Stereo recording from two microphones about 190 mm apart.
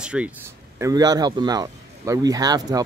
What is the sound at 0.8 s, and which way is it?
A man's voice, 20° right (ahead or behind).